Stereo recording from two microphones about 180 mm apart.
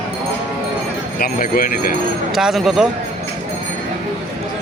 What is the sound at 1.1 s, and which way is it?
Speech, 55° left (ahead or behind).